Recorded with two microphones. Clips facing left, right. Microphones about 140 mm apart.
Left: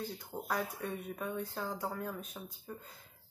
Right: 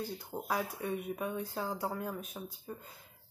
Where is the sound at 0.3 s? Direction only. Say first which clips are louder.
Right 1 dB; 10° right (ahead or behind).